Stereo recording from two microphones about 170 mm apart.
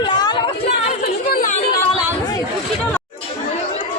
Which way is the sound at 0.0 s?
25° left (ahead or behind).